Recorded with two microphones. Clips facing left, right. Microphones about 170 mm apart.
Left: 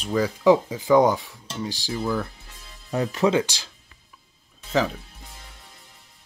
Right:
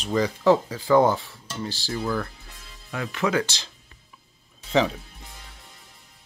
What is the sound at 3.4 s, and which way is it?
Dishes, 10° left (ahead or behind).